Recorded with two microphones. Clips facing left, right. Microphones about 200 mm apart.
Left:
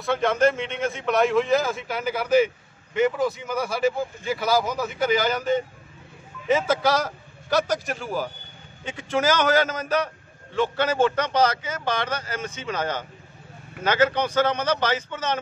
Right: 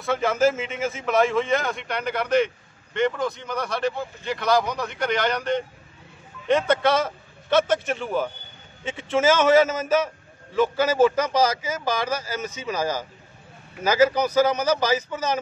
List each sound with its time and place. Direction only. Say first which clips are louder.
0.0 s a man's voice: even; centre (ahead or behind)